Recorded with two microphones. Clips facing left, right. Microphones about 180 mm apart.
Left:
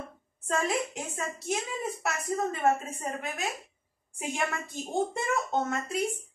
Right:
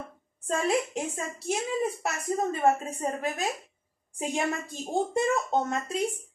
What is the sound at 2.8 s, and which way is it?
Speech, 35° right (ahead or behind).